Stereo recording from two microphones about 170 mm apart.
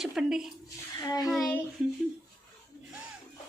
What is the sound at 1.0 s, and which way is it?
Speech, 20° left (ahead or behind).